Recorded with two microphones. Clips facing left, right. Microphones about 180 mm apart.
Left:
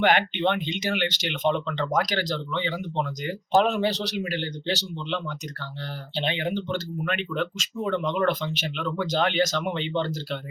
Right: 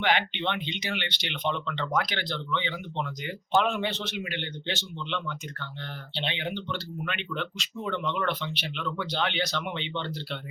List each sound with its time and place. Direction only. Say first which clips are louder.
0.0 s speech: left 5 dB; 45° left (ahead or behind)